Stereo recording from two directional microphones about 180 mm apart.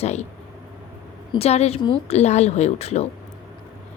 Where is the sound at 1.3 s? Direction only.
35° left (ahead or behind).